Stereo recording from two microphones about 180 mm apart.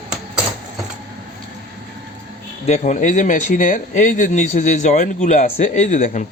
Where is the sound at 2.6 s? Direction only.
40° left (ahead or behind).